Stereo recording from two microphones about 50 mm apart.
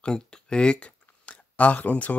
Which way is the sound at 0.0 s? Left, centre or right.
Centre.